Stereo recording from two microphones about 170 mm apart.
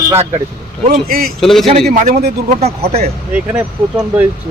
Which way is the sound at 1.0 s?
55° right (ahead or behind).